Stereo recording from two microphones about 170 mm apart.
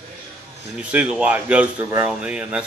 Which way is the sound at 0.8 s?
5° right (ahead or behind).